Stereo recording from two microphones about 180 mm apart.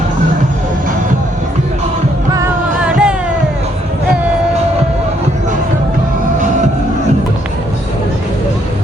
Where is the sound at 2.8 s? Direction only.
5° right (ahead or behind).